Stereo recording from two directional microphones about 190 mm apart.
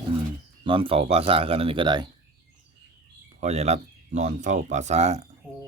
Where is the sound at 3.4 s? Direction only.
35° right (ahead or behind).